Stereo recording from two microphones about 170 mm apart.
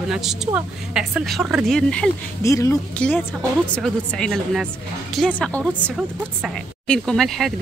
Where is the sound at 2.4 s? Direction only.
20° left (ahead or behind).